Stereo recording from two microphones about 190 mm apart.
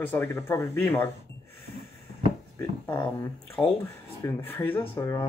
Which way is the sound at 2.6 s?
15° left (ahead or behind).